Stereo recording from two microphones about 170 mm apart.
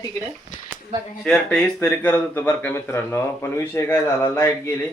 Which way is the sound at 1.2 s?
5° left (ahead or behind).